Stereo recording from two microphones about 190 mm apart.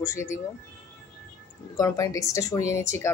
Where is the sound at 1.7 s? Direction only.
15° left (ahead or behind).